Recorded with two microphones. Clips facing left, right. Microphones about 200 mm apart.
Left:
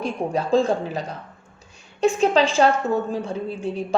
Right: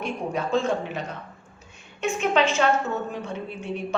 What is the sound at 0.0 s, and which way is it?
A woman's voice, 35° left (ahead or behind).